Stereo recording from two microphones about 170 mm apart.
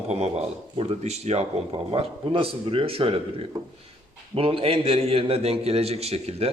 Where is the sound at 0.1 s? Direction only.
40° right (ahead or behind).